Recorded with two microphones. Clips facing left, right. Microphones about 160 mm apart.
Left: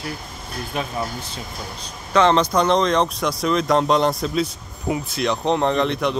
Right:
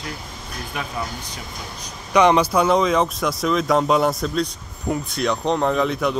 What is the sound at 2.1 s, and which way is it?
Speech, 15° right (ahead or behind).